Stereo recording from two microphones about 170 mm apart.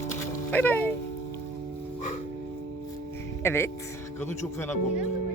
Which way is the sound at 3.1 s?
15° left (ahead or behind).